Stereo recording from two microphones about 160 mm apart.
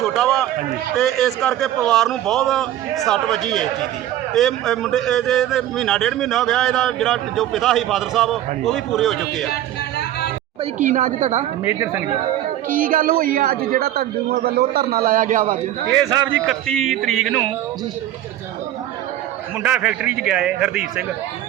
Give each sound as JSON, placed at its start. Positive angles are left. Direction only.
{"t": 0.0, "sound": "run", "side_deg": 0}
{"t": 0.9, "sound": "a man's voice", "side_deg": 0}
{"t": 10.8, "sound": "speech", "side_deg": -55}
{"t": 11.6, "sound": "speech", "side_deg": -15}
{"t": 12.7, "sound": "a man's voice", "side_deg": -60}
{"t": 14.9, "sound": "a man's voice", "side_deg": -60}
{"t": 15.9, "sound": "a man's voice", "side_deg": -20}
{"t": 16.5, "sound": "a man's voice", "side_deg": 0}
{"t": 19.6, "sound": "a man's voice", "side_deg": -5}